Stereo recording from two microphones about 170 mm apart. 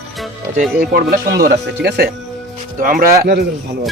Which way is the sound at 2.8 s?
60° right (ahead or behind).